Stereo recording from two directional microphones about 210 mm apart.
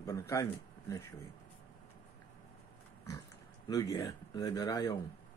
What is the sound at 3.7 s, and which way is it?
Speech, 20° left (ahead or behind).